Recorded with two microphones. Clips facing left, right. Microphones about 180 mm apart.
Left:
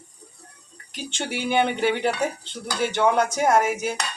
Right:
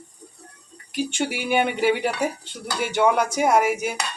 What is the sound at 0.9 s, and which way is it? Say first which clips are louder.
Speech: right 5 dB; 10° right (ahead or behind).